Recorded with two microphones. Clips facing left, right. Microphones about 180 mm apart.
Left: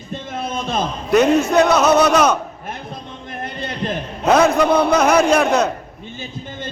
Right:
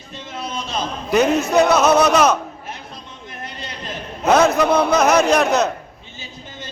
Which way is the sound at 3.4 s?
55° left (ahead or behind).